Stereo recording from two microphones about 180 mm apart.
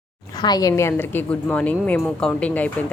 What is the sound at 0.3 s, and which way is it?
A woman's voice, 20° left (ahead or behind).